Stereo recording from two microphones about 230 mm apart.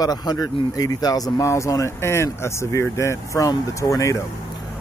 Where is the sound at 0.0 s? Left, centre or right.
Centre.